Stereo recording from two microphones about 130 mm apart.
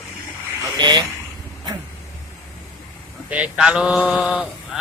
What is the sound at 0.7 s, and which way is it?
Speech, 35° right (ahead or behind).